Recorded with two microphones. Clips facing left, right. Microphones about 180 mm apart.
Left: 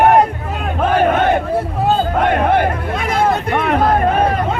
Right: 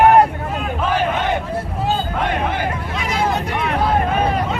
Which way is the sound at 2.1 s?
50° left (ahead or behind).